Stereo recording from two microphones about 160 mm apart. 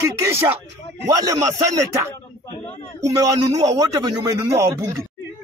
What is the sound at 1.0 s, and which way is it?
Speech, 20° right (ahead or behind).